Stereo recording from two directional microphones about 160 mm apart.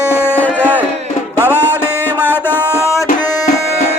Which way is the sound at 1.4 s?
15° left (ahead or behind).